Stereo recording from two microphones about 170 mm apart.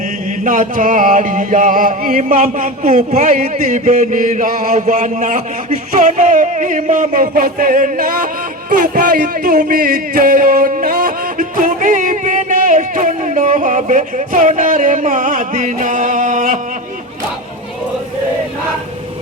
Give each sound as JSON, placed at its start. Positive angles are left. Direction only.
{"t": 0.4, "sound": "music", "side_deg": -50}
{"t": 7.1, "sound": "speech", "side_deg": -60}